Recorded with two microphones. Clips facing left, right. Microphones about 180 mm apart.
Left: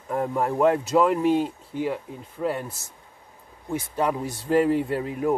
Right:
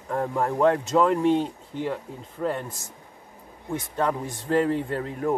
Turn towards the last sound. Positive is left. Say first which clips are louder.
# left 3 dB
turn(degrees=10)  # may be behind; listen again after turning